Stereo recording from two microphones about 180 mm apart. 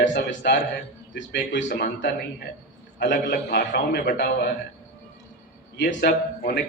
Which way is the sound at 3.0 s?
70° left (ahead or behind).